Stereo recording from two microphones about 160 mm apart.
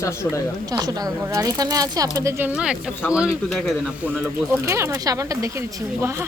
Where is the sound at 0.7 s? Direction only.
25° right (ahead or behind).